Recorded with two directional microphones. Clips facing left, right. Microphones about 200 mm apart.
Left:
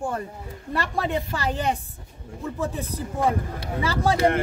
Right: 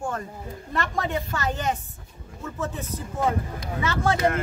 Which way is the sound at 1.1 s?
30° left (ahead or behind).